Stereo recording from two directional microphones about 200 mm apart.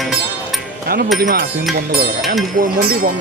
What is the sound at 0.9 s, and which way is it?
Speech, 50° right (ahead or behind).